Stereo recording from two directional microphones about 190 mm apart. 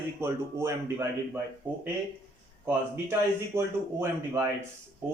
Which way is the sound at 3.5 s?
15° right (ahead or behind).